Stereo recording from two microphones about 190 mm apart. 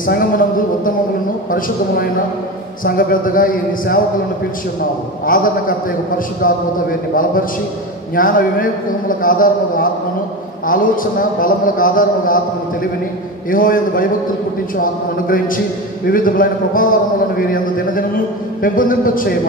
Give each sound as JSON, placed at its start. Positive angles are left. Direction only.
{"t": 0.0, "sound": "speech", "side_deg": 50}
{"t": 2.8, "sound": "a man's voice", "side_deg": 45}
{"t": 5.2, "sound": "a man's voice", "side_deg": 45}
{"t": 13.5, "sound": "a man's voice", "side_deg": 45}